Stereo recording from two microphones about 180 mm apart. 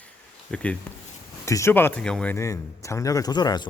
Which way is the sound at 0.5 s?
5° left (ahead or behind).